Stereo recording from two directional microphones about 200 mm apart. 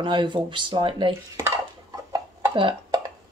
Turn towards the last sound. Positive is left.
turn(degrees=-25)  # may be behind; listen again after turning